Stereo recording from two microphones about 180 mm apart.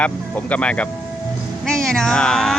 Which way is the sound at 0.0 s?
10° left (ahead or behind).